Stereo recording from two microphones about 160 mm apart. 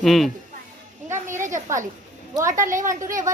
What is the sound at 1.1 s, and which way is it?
Speech, 15° right (ahead or behind).